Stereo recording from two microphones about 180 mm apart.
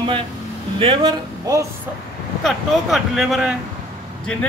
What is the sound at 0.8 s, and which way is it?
Speech, 25° right (ahead or behind).